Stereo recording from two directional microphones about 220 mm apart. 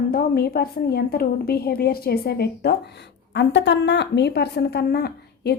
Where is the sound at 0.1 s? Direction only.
45° left (ahead or behind).